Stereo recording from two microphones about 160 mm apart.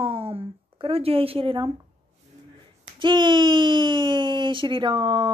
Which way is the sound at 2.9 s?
30° right (ahead or behind).